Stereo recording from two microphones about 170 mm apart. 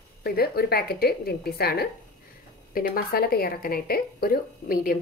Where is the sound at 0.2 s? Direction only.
65° left (ahead or behind).